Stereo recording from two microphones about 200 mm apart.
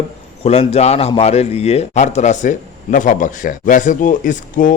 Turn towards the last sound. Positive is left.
turn(degrees=40)  # may be behind; listen again after turning